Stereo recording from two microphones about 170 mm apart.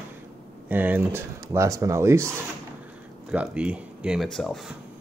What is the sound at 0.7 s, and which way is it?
Speech, 10° right (ahead or behind).